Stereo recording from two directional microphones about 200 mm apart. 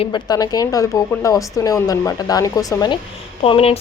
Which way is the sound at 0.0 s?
20° left (ahead or behind).